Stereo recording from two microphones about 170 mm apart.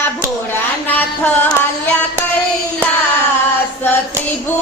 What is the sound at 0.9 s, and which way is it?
Music, 10° left (ahead or behind).